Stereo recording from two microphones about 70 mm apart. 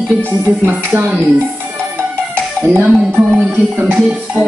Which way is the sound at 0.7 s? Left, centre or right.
Right.